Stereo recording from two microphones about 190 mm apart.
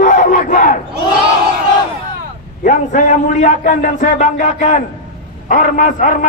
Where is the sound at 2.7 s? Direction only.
40° left (ahead or behind).